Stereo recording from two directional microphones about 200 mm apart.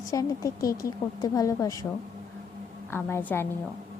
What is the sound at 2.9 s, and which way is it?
Speech, 10° left (ahead or behind).